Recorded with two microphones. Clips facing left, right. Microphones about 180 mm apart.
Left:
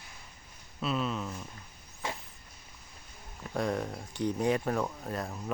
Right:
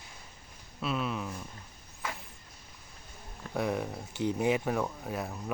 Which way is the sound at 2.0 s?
25° left (ahead or behind).